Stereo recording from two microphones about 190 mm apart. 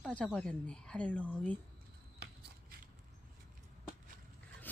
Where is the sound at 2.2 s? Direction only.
55° right (ahead or behind).